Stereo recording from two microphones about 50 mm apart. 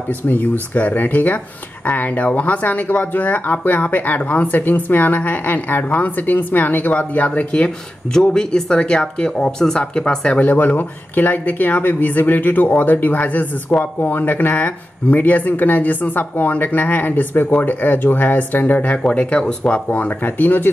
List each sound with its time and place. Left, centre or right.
0.3 s speech: left
8.3 s speech: centre
10.4 s speech: left